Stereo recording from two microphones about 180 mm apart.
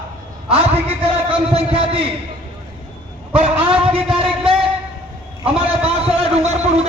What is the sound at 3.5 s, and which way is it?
Speech, 5° right (ahead or behind).